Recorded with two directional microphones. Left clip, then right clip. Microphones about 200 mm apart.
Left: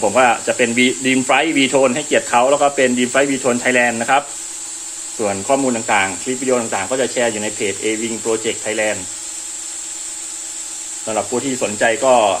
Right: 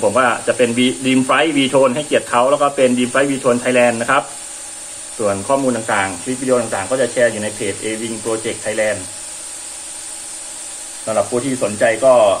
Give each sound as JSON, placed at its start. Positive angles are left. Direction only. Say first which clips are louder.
{"t": 0.1, "sound": "speech", "louder": "left 1 dB", "side_deg": 25}
{"t": 5.2, "sound": "speech", "louder": "right 1 dB", "side_deg": 30}
{"t": 11.8, "sound": "speech", "louder": "right 2 dB", "side_deg": 30}